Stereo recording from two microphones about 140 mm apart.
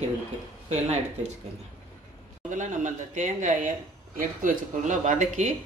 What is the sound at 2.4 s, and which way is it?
Speech, 60° right (ahead or behind).